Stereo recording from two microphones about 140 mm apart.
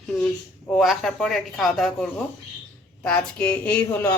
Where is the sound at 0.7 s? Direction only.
Centre (ahead or behind).